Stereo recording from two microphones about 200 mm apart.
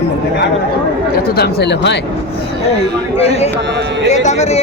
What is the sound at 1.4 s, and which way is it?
Speech, 55° left (ahead or behind).